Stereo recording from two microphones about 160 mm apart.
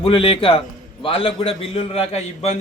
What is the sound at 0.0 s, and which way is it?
A man's voice, 35° left (ahead or behind).